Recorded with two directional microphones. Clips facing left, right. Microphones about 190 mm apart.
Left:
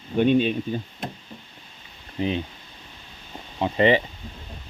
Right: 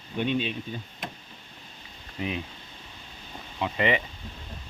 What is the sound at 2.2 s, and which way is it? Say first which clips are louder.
Speech: left 6 dB; 30° left (ahead or behind).